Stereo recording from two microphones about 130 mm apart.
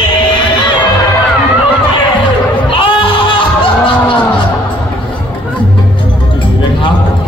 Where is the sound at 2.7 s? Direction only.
40° left (ahead or behind).